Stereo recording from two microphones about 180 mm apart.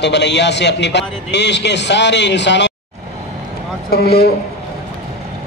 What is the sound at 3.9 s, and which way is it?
Speech, 60° left (ahead or behind).